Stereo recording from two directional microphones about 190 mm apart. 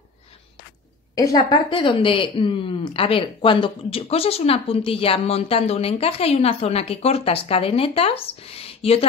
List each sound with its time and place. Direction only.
1.1 s speech: 20° left (ahead or behind)